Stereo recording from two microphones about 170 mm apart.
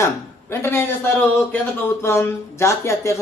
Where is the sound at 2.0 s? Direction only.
15° left (ahead or behind).